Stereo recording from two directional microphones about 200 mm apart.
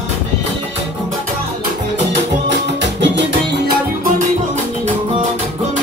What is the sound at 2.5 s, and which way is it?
Music, 60° right (ahead or behind).